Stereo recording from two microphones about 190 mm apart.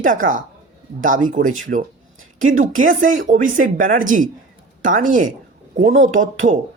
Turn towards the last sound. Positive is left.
turn(degrees=-40)  # may be behind; listen again after turning